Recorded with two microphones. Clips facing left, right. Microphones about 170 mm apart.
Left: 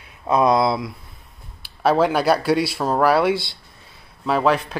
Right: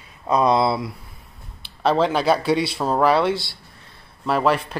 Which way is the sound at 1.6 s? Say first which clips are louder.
Left 2 dB; 10° left (ahead or behind).